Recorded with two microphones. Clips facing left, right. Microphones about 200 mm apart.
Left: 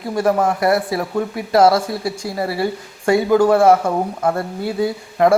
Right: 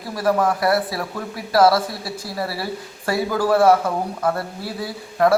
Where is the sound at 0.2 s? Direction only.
25° left (ahead or behind).